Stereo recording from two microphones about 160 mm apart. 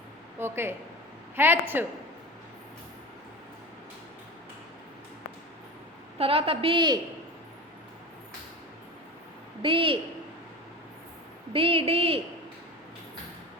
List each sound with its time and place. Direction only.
0.3 s a sound: 15° right (ahead or behind)
1.4 s a woman's voice: 15° right (ahead or behind)
6.1 s a woman's voice: 35° right (ahead or behind)
9.6 s a woman's voice: 35° right (ahead or behind)
11.5 s a woman's voice: 35° right (ahead or behind)